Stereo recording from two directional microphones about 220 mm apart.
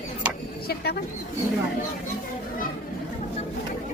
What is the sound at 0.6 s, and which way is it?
Speech, 50° left (ahead or behind).